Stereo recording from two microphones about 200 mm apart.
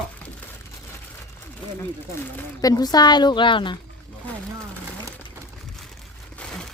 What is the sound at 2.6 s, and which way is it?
A woman's voice, 20° left (ahead or behind).